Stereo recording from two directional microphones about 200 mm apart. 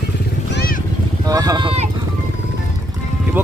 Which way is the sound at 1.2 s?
20° right (ahead or behind).